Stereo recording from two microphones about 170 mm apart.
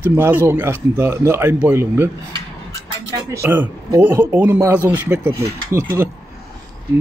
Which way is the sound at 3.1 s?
15° right (ahead or behind).